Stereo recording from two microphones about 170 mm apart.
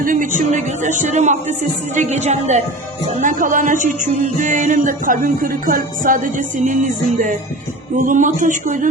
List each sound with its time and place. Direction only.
0.0 s a woman's voice: 50° right (ahead or behind)